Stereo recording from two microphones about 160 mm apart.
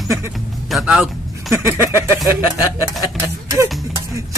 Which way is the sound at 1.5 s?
15° right (ahead or behind).